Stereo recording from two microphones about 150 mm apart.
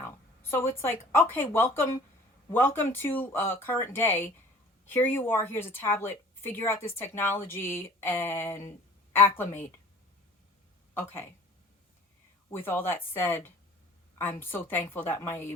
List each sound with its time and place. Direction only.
0.5 s speech: 15° left (ahead or behind)
10.9 s speech: 15° left (ahead or behind)
12.5 s speech: 15° left (ahead or behind)